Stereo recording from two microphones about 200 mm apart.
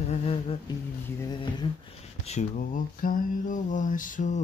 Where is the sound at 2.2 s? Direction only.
35° left (ahead or behind).